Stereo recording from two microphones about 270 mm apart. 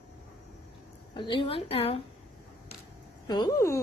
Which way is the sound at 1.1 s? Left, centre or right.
Centre.